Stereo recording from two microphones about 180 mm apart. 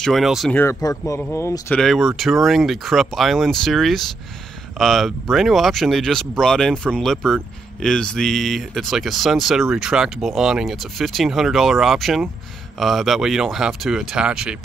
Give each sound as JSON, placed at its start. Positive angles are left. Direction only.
{"t": 0.0, "sound": "speech", "side_deg": 0}
{"t": 0.6, "sound": "speech", "side_deg": 15}
{"t": 1.8, "sound": "speech", "side_deg": 0}